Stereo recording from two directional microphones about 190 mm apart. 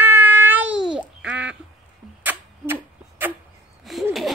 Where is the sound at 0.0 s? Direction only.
10° right (ahead or behind).